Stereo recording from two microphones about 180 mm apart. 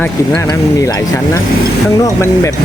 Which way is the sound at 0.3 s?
20° left (ahead or behind).